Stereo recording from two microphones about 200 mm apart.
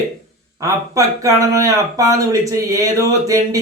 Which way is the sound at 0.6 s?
15° right (ahead or behind).